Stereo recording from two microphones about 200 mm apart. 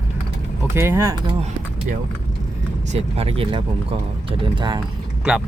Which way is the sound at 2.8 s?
30° right (ahead or behind).